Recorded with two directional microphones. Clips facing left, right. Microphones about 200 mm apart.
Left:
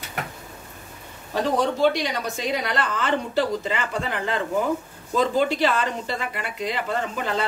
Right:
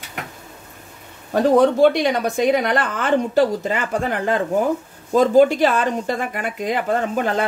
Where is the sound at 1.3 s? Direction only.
55° right (ahead or behind).